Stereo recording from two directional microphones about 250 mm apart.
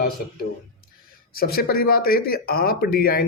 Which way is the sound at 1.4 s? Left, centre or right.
Left.